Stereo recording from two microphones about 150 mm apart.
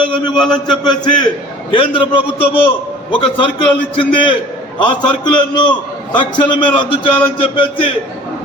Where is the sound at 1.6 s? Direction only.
35° left (ahead or behind).